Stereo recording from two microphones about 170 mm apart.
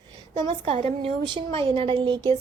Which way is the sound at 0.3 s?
30° right (ahead or behind).